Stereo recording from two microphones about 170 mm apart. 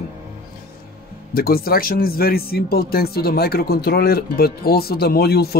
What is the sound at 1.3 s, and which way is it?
Speech, 60° left (ahead or behind).